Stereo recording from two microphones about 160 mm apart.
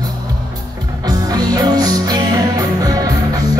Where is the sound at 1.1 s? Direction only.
25° right (ahead or behind).